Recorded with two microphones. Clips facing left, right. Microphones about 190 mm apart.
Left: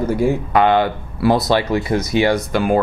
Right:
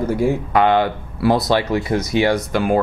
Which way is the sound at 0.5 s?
15° left (ahead or behind).